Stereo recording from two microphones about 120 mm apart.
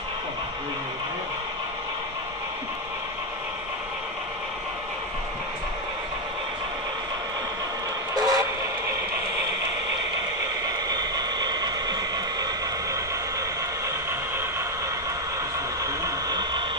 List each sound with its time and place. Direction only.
8.1 s train: 30° right (ahead or behind)
10.9 s a sound: 35° right (ahead or behind)
15.8 s vehicle: 30° right (ahead or behind)